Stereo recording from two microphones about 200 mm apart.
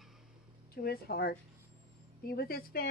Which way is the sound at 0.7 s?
50° left (ahead or behind).